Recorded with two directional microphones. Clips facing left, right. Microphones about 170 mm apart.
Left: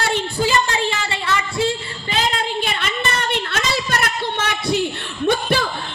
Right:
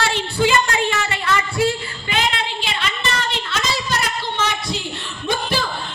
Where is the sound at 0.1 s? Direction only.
40° left (ahead or behind).